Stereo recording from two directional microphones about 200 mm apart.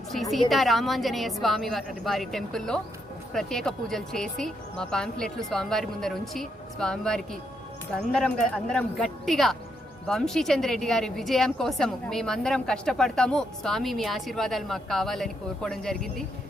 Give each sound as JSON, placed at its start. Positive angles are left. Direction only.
{"t": 0.1, "sound": "a woman's voice", "side_deg": 0}
{"t": 8.7, "sound": "a woman's voice", "side_deg": 0}